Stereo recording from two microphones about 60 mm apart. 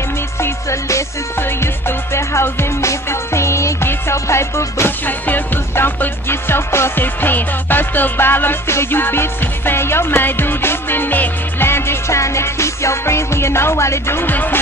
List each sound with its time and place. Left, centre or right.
0.4 s music: left
4.8 s music: left
14.3 s speech: left